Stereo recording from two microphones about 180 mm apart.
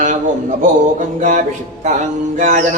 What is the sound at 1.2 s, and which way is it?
Speech, 45° right (ahead or behind).